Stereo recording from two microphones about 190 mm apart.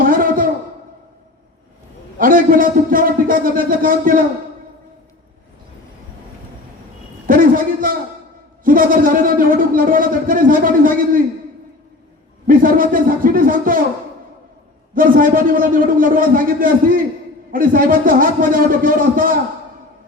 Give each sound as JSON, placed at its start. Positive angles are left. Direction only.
{"t": 0.0, "sound": "a sound", "side_deg": -45}
{"t": 2.1, "sound": "a man's voice", "side_deg": -45}
{"t": 7.3, "sound": "a man's voice", "side_deg": -45}
{"t": 12.5, "sound": "a man's voice", "side_deg": -45}
{"t": 14.9, "sound": "a man's voice", "side_deg": -45}